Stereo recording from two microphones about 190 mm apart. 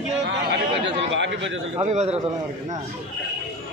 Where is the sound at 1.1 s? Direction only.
70° right (ahead or behind).